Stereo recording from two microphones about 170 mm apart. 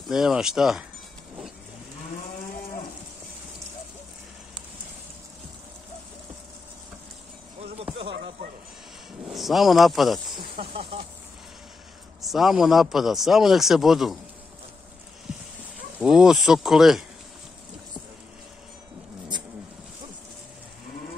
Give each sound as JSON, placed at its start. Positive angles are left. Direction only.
{"t": 0.1, "sound": "a man's voice", "side_deg": -5}
{"t": 7.6, "sound": "a sound", "side_deg": -35}
{"t": 9.3, "sound": "a man's voice", "side_deg": 0}
{"t": 10.7, "sound": "speech", "side_deg": -35}
{"t": 12.2, "sound": "a man's voice", "side_deg": 0}
{"t": 16.0, "sound": "a man's voice", "side_deg": 0}